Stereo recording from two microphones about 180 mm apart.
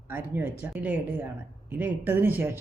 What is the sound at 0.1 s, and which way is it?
A woman's voice, 10° right (ahead or behind).